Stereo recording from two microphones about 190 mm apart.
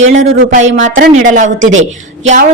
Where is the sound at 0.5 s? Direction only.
40° right (ahead or behind).